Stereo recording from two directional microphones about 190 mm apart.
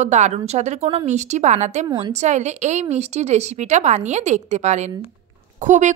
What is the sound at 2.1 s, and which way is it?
Speech, 35° right (ahead or behind).